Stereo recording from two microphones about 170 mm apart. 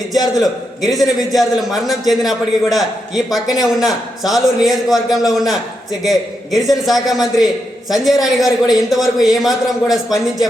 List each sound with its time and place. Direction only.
0.1 s a man's voice: centre (ahead or behind)
6.7 s a man's voice: centre (ahead or behind)